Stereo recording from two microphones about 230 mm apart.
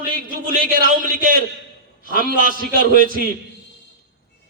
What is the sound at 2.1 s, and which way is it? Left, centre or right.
A man's voice, left.